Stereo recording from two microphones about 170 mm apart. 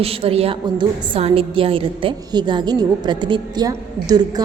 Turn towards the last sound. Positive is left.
turn(degrees=-20)  # may be behind; listen again after turning